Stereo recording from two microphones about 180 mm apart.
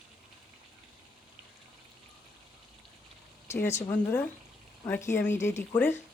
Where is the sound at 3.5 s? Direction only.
15° left (ahead or behind).